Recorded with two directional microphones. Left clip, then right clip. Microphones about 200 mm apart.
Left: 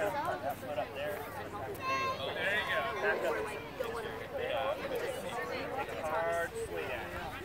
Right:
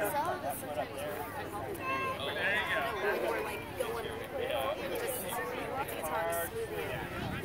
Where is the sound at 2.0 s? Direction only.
45° left (ahead or behind).